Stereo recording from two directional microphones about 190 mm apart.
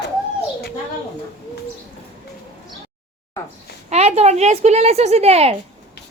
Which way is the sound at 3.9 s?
35° right (ahead or behind).